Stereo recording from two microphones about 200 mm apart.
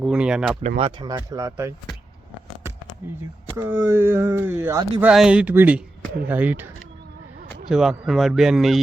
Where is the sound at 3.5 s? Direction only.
15° right (ahead or behind).